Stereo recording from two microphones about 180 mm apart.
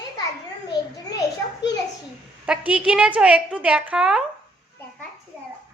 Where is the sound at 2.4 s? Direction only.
5° right (ahead or behind).